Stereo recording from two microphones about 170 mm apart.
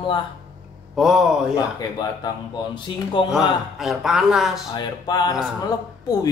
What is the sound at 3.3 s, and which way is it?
Speech, centre (ahead or behind).